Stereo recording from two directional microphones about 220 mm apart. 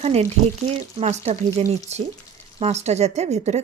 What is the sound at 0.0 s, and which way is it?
A woman's voice, 30° right (ahead or behind).